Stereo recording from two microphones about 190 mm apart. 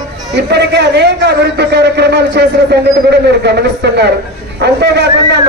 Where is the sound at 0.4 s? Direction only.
65° right (ahead or behind).